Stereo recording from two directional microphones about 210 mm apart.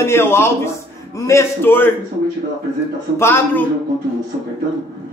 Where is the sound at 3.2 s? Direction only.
10° left (ahead or behind).